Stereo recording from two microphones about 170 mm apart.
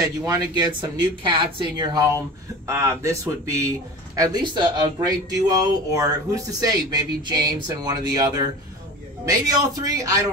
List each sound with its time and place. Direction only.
0.0 s speech: 20° right (ahead or behind)